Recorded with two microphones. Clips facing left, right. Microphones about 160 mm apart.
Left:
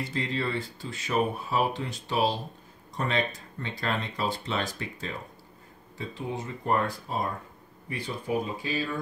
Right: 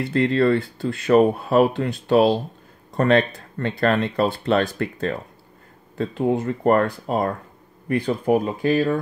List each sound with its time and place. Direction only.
0.0 s speech: 60° right (ahead or behind)